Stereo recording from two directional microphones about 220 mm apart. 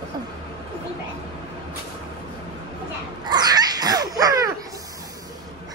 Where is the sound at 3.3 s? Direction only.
20° right (ahead or behind).